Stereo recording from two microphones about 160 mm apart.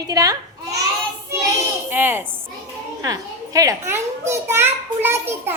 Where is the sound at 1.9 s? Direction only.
15° right (ahead or behind).